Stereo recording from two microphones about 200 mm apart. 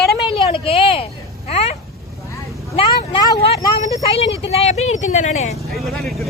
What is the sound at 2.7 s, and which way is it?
Speech, 25° left (ahead or behind).